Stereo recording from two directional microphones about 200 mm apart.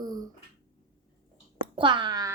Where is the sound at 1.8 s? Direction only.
25° right (ahead or behind).